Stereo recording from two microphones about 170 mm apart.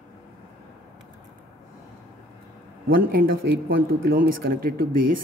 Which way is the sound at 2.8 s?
60° right (ahead or behind).